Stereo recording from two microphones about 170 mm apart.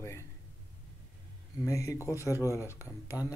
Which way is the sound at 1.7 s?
20° left (ahead or behind).